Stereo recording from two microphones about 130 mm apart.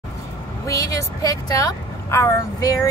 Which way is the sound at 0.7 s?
25° left (ahead or behind).